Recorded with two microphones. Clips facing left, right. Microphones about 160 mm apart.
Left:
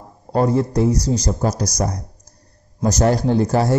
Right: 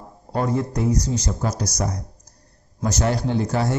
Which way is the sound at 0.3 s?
35° left (ahead or behind).